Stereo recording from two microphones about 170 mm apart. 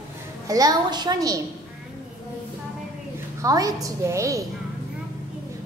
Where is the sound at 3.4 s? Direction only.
20° right (ahead or behind).